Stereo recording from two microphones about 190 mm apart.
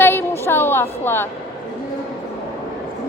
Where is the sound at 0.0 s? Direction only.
10° left (ahead or behind).